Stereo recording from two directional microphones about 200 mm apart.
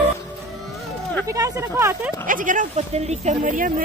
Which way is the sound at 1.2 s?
15° right (ahead or behind).